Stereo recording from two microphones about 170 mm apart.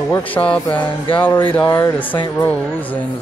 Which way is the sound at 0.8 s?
30° left (ahead or behind).